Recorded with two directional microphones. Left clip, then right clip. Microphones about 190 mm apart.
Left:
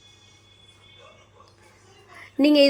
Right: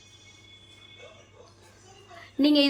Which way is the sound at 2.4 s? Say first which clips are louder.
Left 4 dB; 20° left (ahead or behind).